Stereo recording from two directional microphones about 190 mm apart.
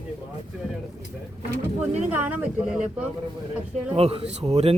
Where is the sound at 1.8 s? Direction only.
10° right (ahead or behind).